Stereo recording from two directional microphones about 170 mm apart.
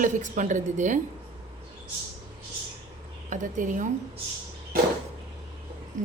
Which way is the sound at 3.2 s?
50° right (ahead or behind).